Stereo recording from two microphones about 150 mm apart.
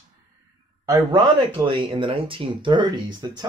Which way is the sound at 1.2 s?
30° right (ahead or behind).